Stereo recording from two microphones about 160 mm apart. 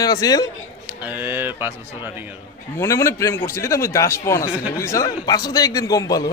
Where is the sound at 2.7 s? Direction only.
20° left (ahead or behind).